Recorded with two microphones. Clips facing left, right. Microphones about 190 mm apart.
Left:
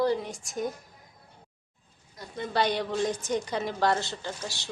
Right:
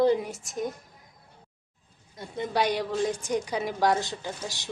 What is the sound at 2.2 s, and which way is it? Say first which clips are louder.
A woman's voice: right 1 dB; 15° right (ahead or behind).